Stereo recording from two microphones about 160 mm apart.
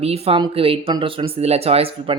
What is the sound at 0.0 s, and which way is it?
Speech, 35° right (ahead or behind).